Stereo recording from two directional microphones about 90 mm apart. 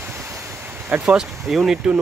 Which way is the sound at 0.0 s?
30° right (ahead or behind).